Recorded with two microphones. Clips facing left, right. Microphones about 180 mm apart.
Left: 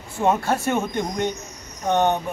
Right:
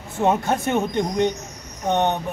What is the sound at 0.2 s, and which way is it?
A man's voice, 20° right (ahead or behind).